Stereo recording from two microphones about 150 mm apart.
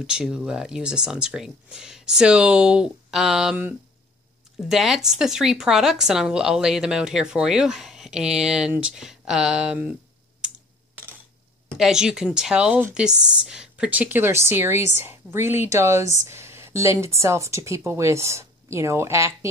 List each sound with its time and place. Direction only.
0.0 s speech: 5° right (ahead or behind)
11.7 s speech: 5° right (ahead or behind); by 19.3 s 20° right (ahead or behind)